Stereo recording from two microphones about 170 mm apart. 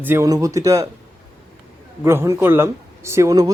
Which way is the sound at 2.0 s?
15° right (ahead or behind).